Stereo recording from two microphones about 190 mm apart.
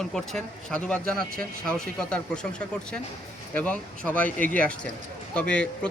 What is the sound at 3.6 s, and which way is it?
Speech, 10° left (ahead or behind).